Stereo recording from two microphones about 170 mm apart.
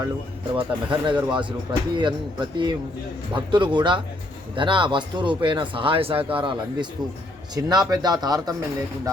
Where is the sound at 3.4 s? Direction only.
30° right (ahead or behind).